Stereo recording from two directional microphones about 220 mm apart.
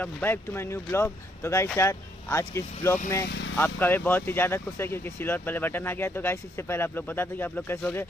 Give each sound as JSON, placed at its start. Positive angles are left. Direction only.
{"t": 0.0, "sound": "speech", "side_deg": 10}